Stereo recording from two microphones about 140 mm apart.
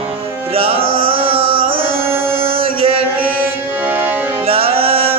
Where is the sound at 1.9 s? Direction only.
15° right (ahead or behind).